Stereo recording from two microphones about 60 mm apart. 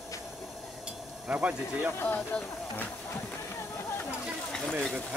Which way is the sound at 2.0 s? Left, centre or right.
Left.